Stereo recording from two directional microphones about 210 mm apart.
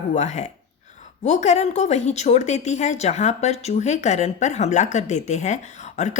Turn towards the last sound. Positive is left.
turn(degrees=35)  # may be behind; listen again after turning